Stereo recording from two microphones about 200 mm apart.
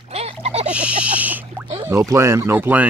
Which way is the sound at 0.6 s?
5° right (ahead or behind).